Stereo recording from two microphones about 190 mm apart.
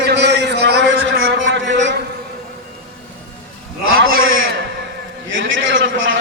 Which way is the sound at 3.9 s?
90° right.